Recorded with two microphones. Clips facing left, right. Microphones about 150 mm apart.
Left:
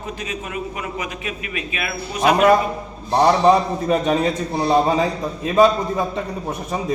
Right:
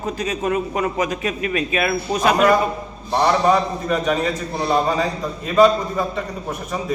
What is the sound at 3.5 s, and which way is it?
Speech, 30° left (ahead or behind).